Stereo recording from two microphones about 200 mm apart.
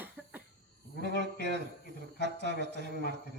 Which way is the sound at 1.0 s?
60° right (ahead or behind).